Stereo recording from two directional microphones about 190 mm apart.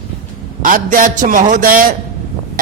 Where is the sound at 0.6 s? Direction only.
45° right (ahead or behind).